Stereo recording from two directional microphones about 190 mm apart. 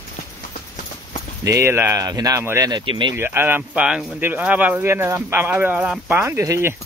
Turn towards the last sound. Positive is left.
turn(degrees=-15)  # may be behind; listen again after turning